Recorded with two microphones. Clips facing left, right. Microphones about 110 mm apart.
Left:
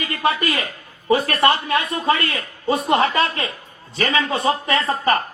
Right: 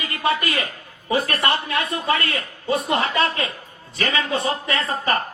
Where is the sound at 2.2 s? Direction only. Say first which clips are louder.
Left 3 dB; 35° left (ahead or behind).